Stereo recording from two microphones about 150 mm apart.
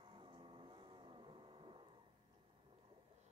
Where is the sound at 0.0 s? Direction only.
35° right (ahead or behind).